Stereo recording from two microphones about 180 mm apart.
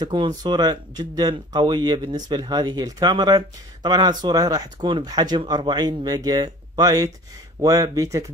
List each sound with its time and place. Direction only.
0.0 s speech: 25° right (ahead or behind)